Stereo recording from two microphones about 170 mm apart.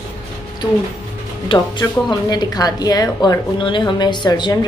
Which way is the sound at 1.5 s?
25° left (ahead or behind).